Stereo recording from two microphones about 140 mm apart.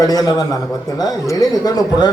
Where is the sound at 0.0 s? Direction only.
25° left (ahead or behind).